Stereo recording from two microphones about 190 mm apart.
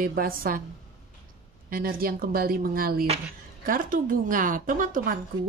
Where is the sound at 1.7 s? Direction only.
50° right (ahead or behind).